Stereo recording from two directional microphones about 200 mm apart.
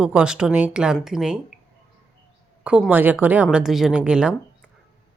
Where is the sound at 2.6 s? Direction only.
5° right (ahead or behind).